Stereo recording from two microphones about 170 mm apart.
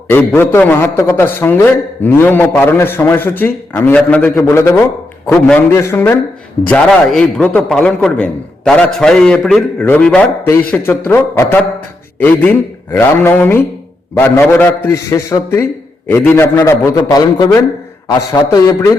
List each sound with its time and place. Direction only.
0.3 s a man's voice: 10° left (ahead or behind)